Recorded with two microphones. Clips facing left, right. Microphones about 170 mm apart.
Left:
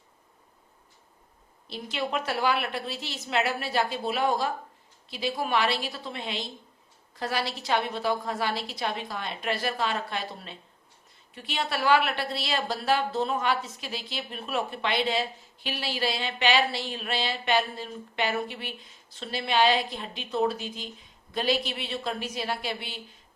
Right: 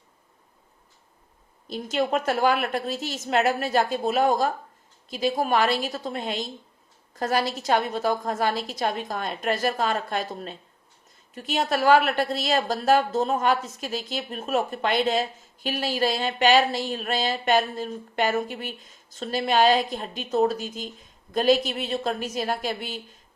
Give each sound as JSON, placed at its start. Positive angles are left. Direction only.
{"t": 1.7, "sound": "a woman's voice", "side_deg": -45}